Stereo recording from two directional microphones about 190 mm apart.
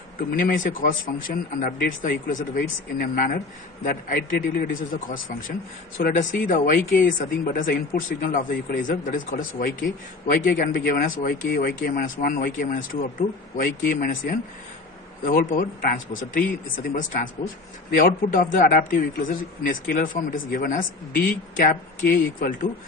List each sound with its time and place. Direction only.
0.3 s speech: 45° left (ahead or behind)